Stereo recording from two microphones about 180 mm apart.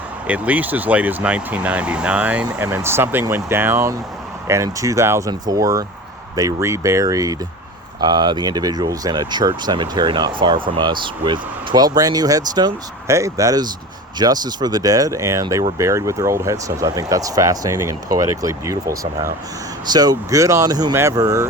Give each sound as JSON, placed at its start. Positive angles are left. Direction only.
{"t": 0.3, "sound": "speech", "side_deg": -10}